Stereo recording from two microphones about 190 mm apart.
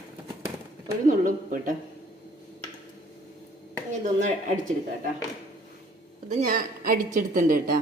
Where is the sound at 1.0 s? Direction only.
45° right (ahead or behind).